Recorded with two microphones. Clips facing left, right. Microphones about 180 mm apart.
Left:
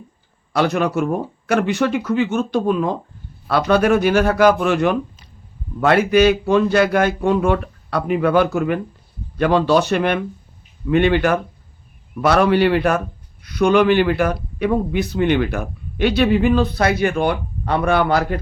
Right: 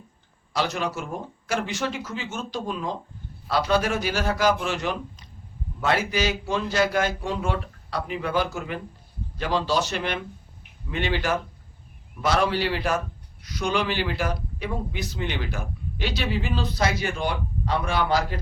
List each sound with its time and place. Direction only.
0.5 s speech: 60° left (ahead or behind)